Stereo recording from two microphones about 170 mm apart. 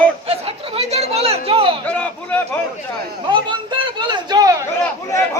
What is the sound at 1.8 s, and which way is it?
Speech, 10° left (ahead or behind).